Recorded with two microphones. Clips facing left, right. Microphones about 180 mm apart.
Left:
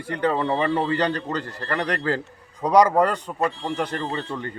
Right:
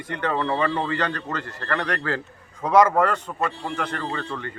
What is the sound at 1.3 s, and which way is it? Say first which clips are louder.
Speech: left 2 dB; 35° left (ahead or behind).